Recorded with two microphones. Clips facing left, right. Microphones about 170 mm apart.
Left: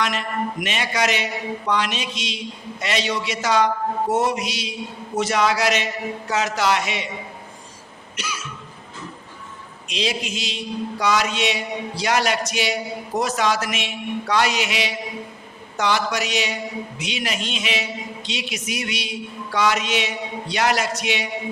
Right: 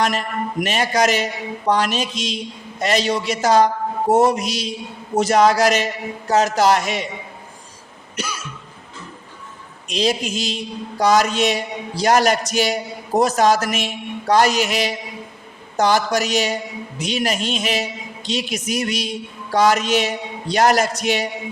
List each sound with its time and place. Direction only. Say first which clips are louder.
0.0 s a man's voice: right 3 dB; 40° right (ahead or behind)
9.9 s a man's voice: right 5 dB; 40° right (ahead or behind)